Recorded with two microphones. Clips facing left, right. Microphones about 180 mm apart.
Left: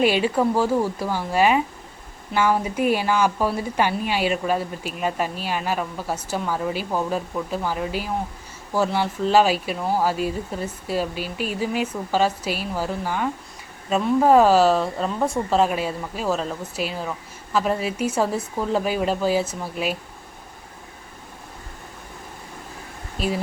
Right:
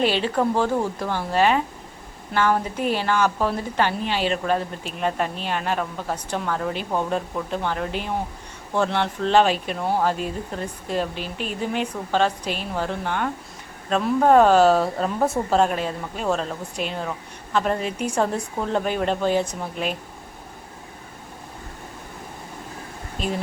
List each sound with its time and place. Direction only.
0.0 s a woman's voice: 10° left (ahead or behind)
23.1 s speech: 5° left (ahead or behind)